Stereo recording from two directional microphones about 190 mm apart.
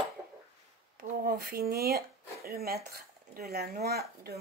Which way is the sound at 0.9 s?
55° right (ahead or behind).